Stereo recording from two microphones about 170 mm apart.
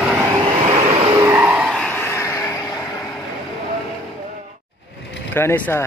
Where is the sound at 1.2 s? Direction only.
10° right (ahead or behind).